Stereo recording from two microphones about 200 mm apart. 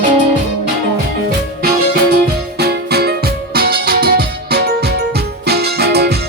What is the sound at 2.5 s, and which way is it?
Music, 55° right (ahead or behind).